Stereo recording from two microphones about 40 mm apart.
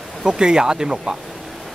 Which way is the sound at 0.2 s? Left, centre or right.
Centre.